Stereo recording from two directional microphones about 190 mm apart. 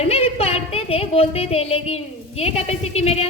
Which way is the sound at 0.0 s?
35° left (ahead or behind).